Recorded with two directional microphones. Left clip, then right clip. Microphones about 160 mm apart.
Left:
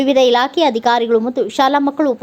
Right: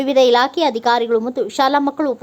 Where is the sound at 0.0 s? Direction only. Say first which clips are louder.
Left 1 dB; 15° left (ahead or behind).